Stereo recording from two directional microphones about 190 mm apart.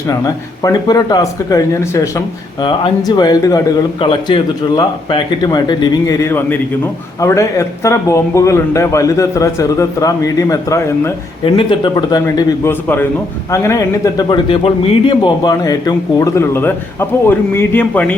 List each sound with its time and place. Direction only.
0.6 s speech: 20° left (ahead or behind)
11.4 s speech: 25° left (ahead or behind); by 18.1 s 10° left (ahead or behind)